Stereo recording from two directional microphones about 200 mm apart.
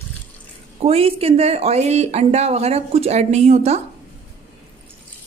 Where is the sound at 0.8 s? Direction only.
30° right (ahead or behind).